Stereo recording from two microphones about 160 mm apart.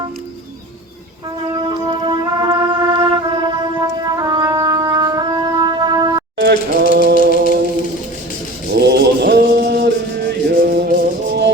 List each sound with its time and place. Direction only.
1.7 s music: 30° right (ahead or behind)
6.3 s a sound: 90° right
7.2 s music: 90° right
8.7 s music: 90° right; by 10.9 s 70° right (ahead or behind)